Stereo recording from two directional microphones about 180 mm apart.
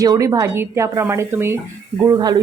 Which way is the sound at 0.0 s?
20° right (ahead or behind).